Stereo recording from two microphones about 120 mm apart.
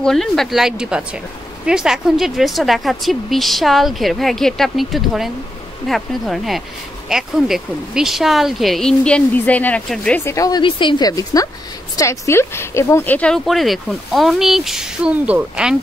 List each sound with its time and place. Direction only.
0.0 s speech: 5° left (ahead or behind)
10.2 s a woman's voice: 25° left (ahead or behind)
10.6 s a woman's voice: 40° left (ahead or behind); by 15.7 s 10° right (ahead or behind)